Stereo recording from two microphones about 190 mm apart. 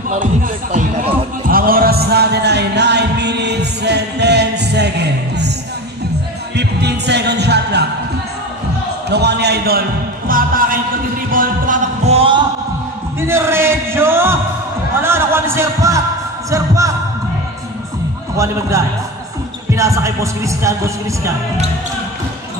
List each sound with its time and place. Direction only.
0.1 s music: 45° right (ahead or behind); by 5.5 s 60° right (ahead or behind)
6.5 s music: 60° right (ahead or behind)
9.1 s a sound: 60° right (ahead or behind)
11.3 s heart murmur: 45° right (ahead or behind)
13.2 s a sound: 15° right (ahead or behind)
16.4 s music: 15° right (ahead or behind)
18.4 s speech: 15° right (ahead or behind)